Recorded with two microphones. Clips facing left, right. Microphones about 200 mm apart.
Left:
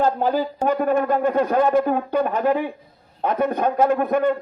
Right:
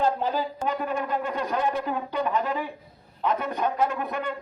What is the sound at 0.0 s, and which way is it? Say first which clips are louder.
Speech: left 5 dB; 50° left (ahead or behind).